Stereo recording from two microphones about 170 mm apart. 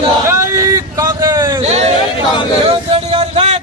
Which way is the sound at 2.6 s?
35° right (ahead or behind).